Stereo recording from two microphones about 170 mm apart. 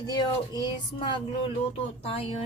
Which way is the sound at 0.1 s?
25° left (ahead or behind).